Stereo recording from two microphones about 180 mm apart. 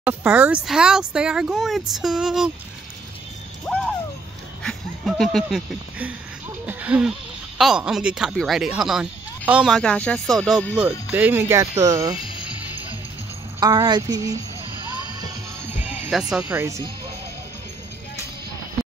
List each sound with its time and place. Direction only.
0.0 s speech: 5° right (ahead or behind)
4.6 s speech: centre (ahead or behind)
11.1 s speech: 10° right (ahead or behind)
13.6 s speech: 25° right (ahead or behind)
15.1 s music: 10° right (ahead or behind)